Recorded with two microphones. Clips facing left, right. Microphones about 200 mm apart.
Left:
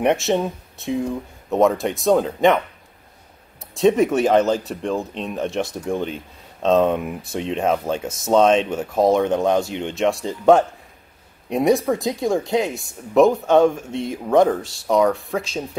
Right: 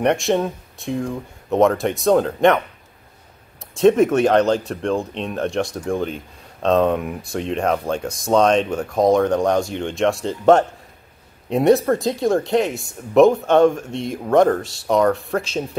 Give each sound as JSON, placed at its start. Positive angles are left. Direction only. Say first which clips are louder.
{"t": 0.0, "sound": "speech", "louder": "right 1 dB", "side_deg": 5}
{"t": 3.7, "sound": "speech", "louder": "right 2 dB", "side_deg": 0}
{"t": 6.9, "sound": "speech", "louder": "right 1 dB", "side_deg": 5}
{"t": 9.6, "sound": "speech", "louder": "right 1 dB", "side_deg": 15}
{"t": 9.9, "sound": "speech", "louder": "right 1 dB", "side_deg": 0}